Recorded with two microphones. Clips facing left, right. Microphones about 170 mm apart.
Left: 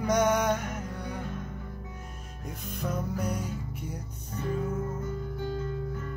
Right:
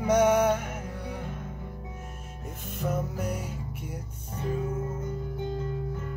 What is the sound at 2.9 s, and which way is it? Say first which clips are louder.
Music: even; 5° right (ahead or behind).